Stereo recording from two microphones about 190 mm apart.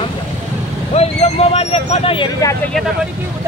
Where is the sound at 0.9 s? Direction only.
35° left (ahead or behind).